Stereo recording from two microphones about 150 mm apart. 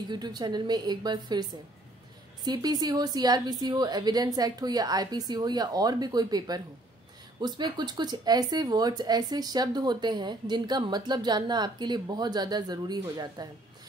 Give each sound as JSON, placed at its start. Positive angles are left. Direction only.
{"t": 0.1, "sound": "speech", "side_deg": -30}
{"t": 2.4, "sound": "speech", "side_deg": -25}